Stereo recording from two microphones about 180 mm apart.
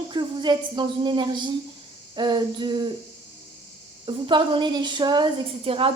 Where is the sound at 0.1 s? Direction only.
25° right (ahead or behind).